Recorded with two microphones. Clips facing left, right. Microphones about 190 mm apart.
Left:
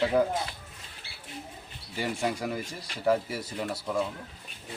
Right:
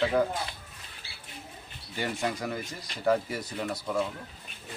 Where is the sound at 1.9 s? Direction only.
5° left (ahead or behind).